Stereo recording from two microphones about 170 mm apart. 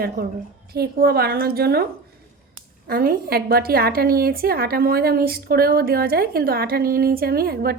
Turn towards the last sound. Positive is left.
turn(degrees=-65)  # may be behind; listen again after turning